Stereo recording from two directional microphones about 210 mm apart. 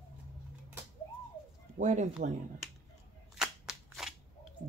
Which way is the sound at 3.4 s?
Centre (ahead or behind).